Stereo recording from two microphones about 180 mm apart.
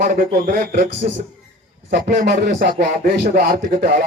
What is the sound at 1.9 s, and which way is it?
Speech, 55° right (ahead or behind).